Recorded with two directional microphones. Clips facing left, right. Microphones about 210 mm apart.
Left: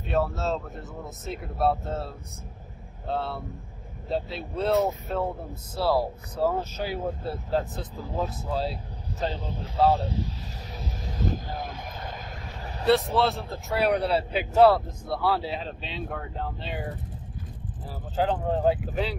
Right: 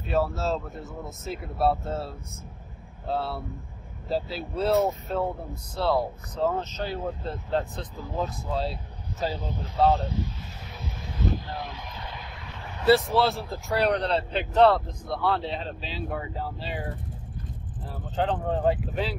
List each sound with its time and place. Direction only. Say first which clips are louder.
0.1 s speech: right 1 dB; centre (ahead or behind)
10.8 s vehicle: even; 45° left (ahead or behind)
12.8 s speech: right 1 dB; centre (ahead or behind)
18.1 s speech: left 1 dB; 5° left (ahead or behind)